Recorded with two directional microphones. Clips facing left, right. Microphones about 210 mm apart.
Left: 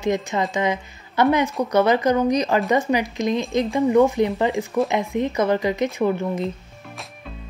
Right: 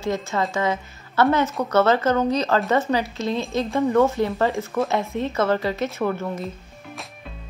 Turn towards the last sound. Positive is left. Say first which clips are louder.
# left 3 dB
turn(degrees=15)  # may be behind; listen again after turning